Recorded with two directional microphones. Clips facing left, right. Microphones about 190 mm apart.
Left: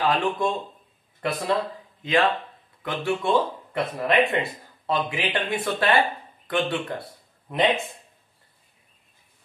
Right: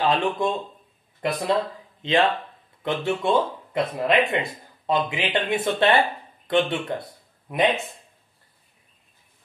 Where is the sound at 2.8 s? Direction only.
25° right (ahead or behind).